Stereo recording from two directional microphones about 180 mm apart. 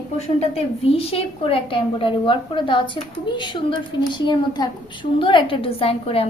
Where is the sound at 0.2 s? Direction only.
35° left (ahead or behind).